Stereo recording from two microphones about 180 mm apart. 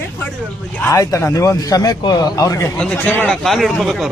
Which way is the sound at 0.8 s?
15° left (ahead or behind).